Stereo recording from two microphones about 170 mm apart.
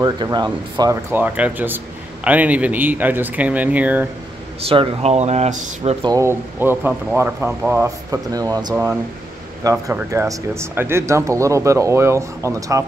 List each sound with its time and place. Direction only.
0.0 s speech: 25° right (ahead or behind)
1.1 s speech: 10° right (ahead or behind)
4.6 s speech: 35° right (ahead or behind)
6.0 s speech: 15° right (ahead or behind)